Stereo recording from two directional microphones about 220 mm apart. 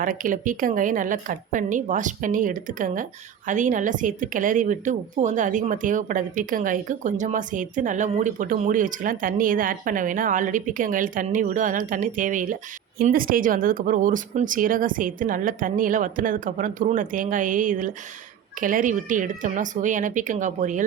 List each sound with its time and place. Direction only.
0.0 s a woman's voice: 40° right (ahead or behind)